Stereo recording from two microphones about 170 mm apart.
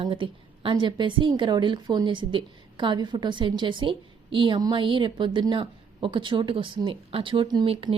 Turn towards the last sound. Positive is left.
turn(degrees=-30)  # may be behind; listen again after turning